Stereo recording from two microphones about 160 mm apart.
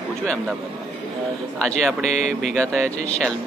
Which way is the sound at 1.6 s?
Centre (ahead or behind).